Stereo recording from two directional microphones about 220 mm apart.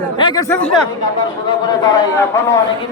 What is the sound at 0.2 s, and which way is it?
Mantra, 20° left (ahead or behind).